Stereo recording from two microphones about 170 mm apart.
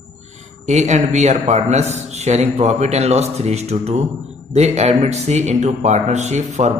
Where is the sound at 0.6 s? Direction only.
45° right (ahead or behind).